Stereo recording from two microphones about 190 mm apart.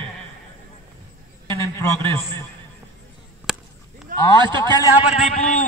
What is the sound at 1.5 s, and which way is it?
Speech, 15° left (ahead or behind).